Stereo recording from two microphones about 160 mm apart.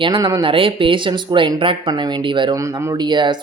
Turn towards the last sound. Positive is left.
turn(degrees=-25)  # may be behind; listen again after turning